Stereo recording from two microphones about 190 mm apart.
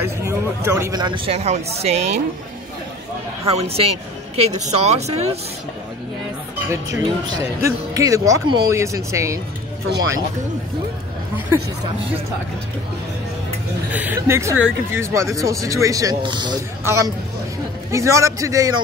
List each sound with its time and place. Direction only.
0.0 s speech: 15° right (ahead or behind); by 2.0 s 35° right (ahead or behind)
3.4 s a woman's voice: 30° right (ahead or behind)
7.2 s speech: 20° right (ahead or behind)
13.9 s speech: 10° right (ahead or behind)